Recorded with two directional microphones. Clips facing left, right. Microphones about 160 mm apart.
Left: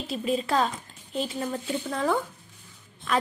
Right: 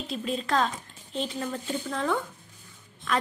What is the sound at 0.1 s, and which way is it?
A woman's voice, 5° left (ahead or behind).